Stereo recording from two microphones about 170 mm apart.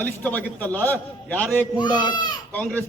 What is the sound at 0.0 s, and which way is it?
A man's voice, 10° left (ahead or behind).